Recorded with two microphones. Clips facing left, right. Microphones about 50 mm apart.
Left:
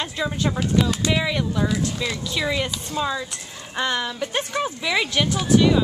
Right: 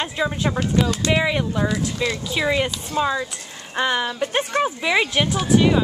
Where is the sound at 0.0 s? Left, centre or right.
Centre.